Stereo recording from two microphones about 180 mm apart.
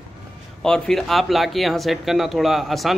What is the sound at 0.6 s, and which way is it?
A man's voice, 5° left (ahead or behind).